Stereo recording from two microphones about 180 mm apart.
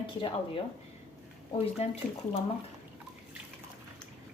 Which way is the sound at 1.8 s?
35° left (ahead or behind).